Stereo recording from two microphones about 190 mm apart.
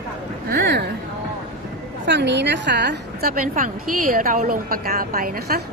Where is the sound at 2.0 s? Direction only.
65° right (ahead or behind).